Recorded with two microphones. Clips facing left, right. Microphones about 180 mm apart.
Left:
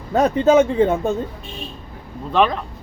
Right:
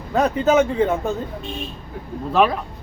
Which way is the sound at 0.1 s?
30° left (ahead or behind).